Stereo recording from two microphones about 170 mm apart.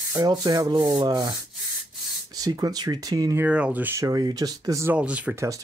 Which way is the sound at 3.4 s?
10° right (ahead or behind).